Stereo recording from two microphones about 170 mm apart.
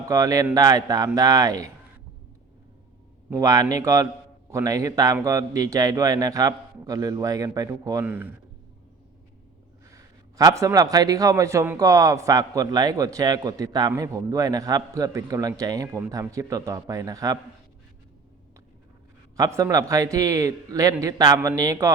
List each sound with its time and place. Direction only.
0.1 s a man's voice: 20° right (ahead or behind)
3.2 s a man's voice: 20° right (ahead or behind)
8.0 s speech: 10° right (ahead or behind)
9.9 s a man's voice: 20° right (ahead or behind)
19.4 s a man's voice: 15° right (ahead or behind)